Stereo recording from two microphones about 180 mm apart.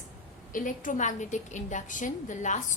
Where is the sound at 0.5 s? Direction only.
45° left (ahead or behind).